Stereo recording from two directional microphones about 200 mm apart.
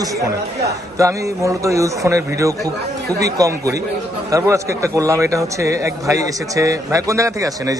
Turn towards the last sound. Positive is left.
turn(degrees=-15)  # may be behind; listen again after turning